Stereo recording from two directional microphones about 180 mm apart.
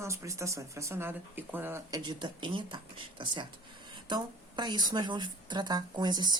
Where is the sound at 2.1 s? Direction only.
25° right (ahead or behind).